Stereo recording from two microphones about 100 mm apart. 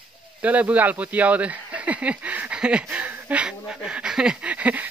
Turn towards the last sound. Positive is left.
turn(degrees=-15)  # may be behind; listen again after turning